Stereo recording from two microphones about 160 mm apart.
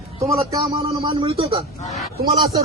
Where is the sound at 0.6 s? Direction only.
35° right (ahead or behind).